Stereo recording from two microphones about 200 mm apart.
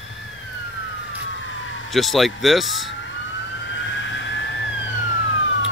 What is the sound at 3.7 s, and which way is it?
Vehicle, 65° left (ahead or behind).